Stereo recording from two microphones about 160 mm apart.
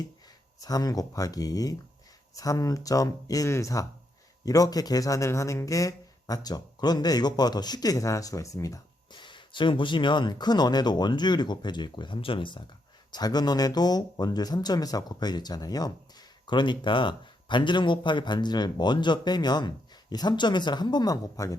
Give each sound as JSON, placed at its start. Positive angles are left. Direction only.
{"t": 0.6, "sound": "speech", "side_deg": 25}